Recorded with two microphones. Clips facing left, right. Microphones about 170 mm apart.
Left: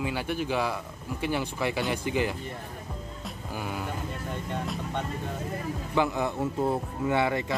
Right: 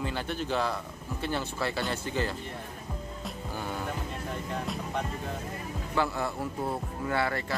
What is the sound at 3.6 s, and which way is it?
Music, 10° left (ahead or behind).